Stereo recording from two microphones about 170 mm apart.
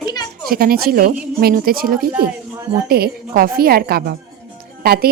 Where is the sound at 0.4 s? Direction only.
60° right (ahead or behind).